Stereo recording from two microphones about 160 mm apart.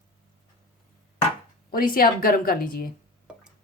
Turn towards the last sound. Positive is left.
turn(degrees=-5)  # may be behind; listen again after turning